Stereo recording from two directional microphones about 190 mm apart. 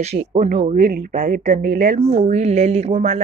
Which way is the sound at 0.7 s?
55° right (ahead or behind).